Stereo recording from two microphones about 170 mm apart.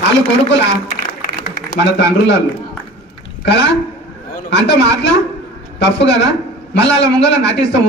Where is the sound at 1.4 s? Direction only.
75° left (ahead or behind).